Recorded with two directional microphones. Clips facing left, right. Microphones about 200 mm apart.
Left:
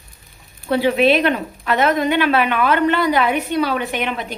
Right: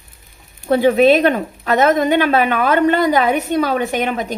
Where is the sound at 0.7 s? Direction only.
45° right (ahead or behind).